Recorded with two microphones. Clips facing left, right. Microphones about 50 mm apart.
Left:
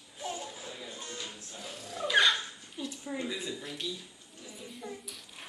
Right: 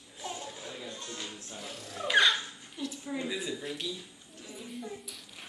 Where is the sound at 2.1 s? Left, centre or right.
Centre.